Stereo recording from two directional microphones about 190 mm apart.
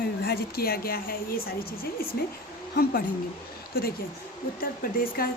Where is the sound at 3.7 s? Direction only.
55° left (ahead or behind).